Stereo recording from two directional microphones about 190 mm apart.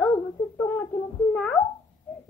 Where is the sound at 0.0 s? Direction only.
10° left (ahead or behind).